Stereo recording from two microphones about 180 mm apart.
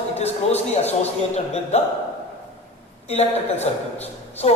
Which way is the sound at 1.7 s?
35° left (ahead or behind).